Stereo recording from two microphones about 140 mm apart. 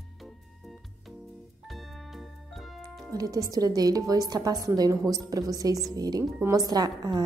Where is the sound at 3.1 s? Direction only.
25° right (ahead or behind).